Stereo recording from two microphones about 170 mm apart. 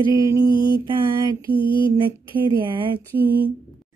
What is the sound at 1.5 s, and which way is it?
Mantra, 30° left (ahead or behind).